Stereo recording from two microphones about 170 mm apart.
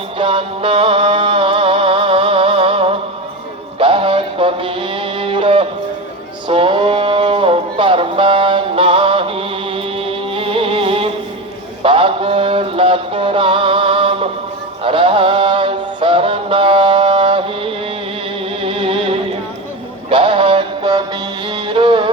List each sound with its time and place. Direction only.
0.2 s music: 30° right (ahead or behind)
11.8 s mantra: 30° right (ahead or behind)
18.6 s music: 35° right (ahead or behind)